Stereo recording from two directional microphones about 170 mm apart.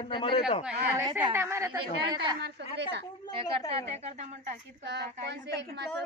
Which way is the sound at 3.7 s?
40° right (ahead or behind).